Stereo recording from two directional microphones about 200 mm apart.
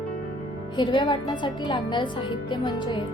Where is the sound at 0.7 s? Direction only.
25° left (ahead or behind).